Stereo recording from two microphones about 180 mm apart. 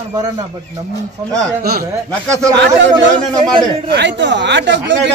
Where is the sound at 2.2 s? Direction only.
5° left (ahead or behind).